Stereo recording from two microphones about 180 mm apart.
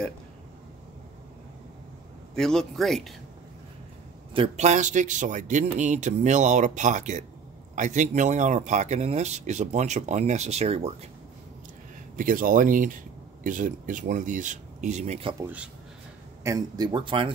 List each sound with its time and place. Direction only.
2.3 s speech: 5° left (ahead or behind)
4.3 s speech: 35° right (ahead or behind)
12.2 s speech: 50° right (ahead or behind)
16.4 s speech: 20° right (ahead or behind)